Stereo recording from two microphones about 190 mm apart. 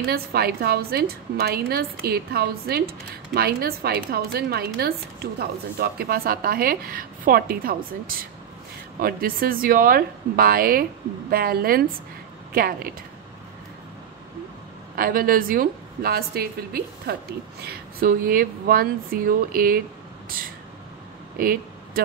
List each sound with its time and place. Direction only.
0.0 s a woman's voice: 55° right (ahead or behind)
15.0 s a woman's voice: 50° right (ahead or behind)
20.2 s a sound: 50° right (ahead or behind)